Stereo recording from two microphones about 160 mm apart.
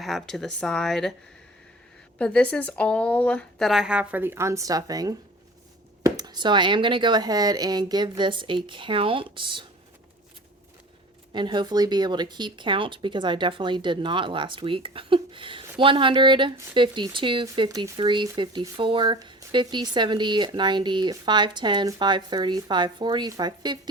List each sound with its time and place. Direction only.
0.0 s speech: centre (ahead or behind)
2.1 s speech: 5° left (ahead or behind); by 9.6 s 30° right (ahead or behind)
11.3 s speech: 30° right (ahead or behind)